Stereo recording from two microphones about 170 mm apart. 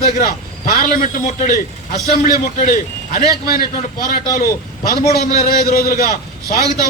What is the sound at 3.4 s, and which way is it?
A man's voice, 60° left (ahead or behind).